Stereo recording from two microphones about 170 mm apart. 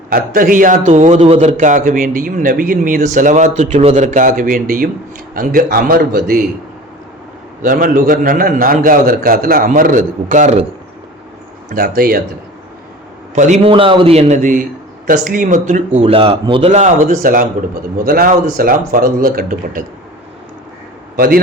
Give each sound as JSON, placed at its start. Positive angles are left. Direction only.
{"t": 0.1, "sound": "a man's voice", "side_deg": -60}
{"t": 7.6, "sound": "a man's voice", "side_deg": -55}
{"t": 11.7, "sound": "a man's voice", "side_deg": -60}
{"t": 13.3, "sound": "a man's voice", "side_deg": -45}
{"t": 13.7, "sound": "a man's voice", "side_deg": -30}
{"t": 17.9, "sound": "a man's voice", "side_deg": -60}
{"t": 21.2, "sound": "a man's voice", "side_deg": -60}